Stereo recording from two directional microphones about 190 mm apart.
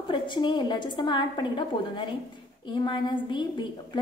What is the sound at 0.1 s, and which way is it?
A woman's voice, 25° left (ahead or behind).